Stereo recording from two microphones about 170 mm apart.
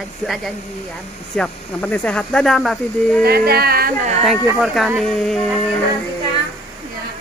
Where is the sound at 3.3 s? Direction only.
65° right (ahead or behind).